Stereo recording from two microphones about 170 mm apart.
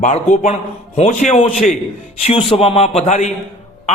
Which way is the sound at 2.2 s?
35° left (ahead or behind).